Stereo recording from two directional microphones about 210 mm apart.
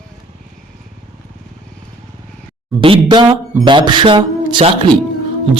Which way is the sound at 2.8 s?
25° right (ahead or behind).